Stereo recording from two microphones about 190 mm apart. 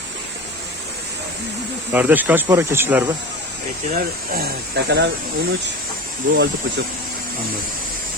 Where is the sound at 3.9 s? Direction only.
45° right (ahead or behind).